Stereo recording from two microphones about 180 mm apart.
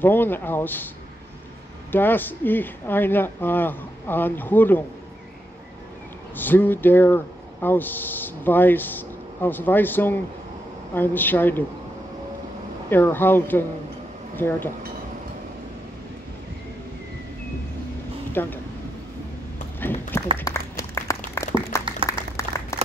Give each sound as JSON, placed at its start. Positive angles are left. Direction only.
{"t": 0.0, "sound": "speech", "side_deg": 10}
{"t": 1.9, "sound": "speech", "side_deg": 10}
{"t": 6.3, "sound": "speech", "side_deg": 10}
{"t": 12.9, "sound": "speech", "side_deg": 10}
{"t": 18.3, "sound": "speech", "side_deg": 10}
{"t": 19.8, "sound": "a sound", "side_deg": 10}
{"t": 20.3, "sound": "applause", "side_deg": 15}
{"t": 21.8, "sound": "applause", "side_deg": -30}